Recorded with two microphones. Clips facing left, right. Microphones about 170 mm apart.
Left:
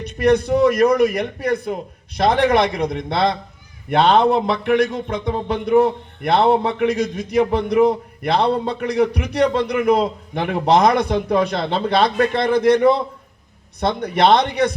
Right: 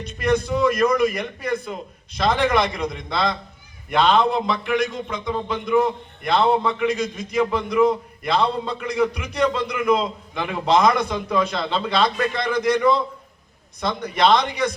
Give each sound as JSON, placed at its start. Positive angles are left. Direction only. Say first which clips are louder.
{"t": 0.0, "sound": "a man's voice", "louder": "left 5 dB", "side_deg": 65}